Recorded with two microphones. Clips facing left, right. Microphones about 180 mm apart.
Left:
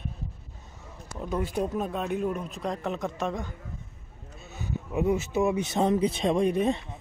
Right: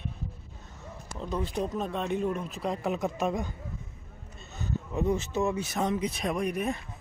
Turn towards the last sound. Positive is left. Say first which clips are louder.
# left 6 dB
turn(degrees=25)  # may be behind; listen again after turning